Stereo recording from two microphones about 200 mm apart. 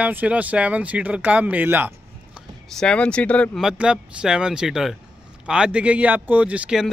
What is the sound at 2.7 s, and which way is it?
Speech, 5° left (ahead or behind).